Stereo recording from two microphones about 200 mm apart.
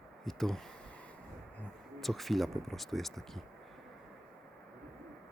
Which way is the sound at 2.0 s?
Centre (ahead or behind).